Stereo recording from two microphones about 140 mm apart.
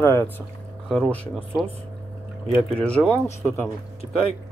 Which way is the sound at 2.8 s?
10° left (ahead or behind).